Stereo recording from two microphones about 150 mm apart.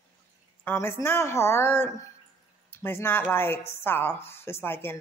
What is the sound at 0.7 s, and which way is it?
A woman's voice, 15° left (ahead or behind).